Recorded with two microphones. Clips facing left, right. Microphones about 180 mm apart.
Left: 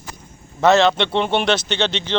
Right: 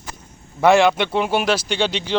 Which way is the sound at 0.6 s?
10° right (ahead or behind).